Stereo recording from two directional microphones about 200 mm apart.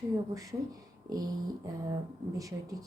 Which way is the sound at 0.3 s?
20° right (ahead or behind).